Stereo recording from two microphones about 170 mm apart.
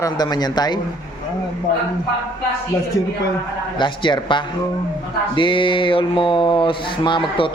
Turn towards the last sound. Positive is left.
turn(degrees=30)  # may be behind; listen again after turning